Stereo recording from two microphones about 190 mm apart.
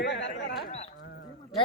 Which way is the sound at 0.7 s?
35° left (ahead or behind).